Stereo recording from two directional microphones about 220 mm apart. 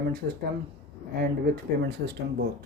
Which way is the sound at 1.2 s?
45° right (ahead or behind).